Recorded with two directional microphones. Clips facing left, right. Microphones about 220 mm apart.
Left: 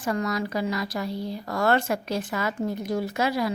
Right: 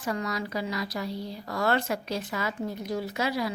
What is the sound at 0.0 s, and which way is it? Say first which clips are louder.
A woman's voice: left 4 dB; 50° left (ahead or behind).